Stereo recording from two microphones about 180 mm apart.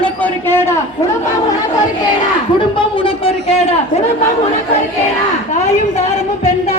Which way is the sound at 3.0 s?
30° left (ahead or behind).